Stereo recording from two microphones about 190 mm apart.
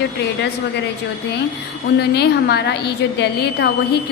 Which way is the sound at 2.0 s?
60° left (ahead or behind).